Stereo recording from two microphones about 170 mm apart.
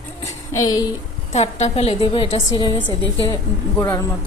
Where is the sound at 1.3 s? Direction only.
40° left (ahead or behind).